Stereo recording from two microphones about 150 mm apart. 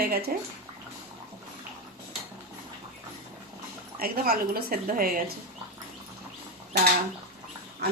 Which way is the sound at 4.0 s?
85° right.